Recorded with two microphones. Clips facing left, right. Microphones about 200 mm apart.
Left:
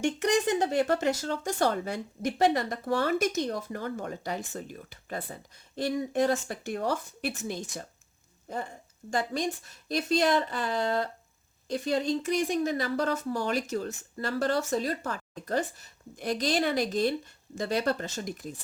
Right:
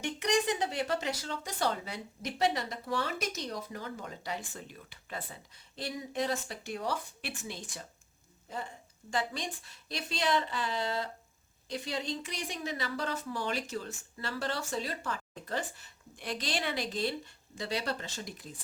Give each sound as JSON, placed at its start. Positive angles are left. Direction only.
{"t": 0.0, "sound": "speech", "side_deg": 45}